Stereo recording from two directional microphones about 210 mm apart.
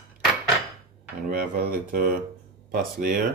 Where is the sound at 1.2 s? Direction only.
40° right (ahead or behind).